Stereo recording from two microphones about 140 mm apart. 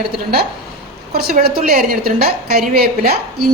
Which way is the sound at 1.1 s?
90° right.